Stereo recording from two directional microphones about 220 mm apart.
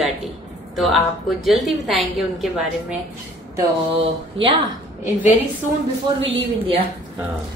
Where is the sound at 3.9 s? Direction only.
25° right (ahead or behind).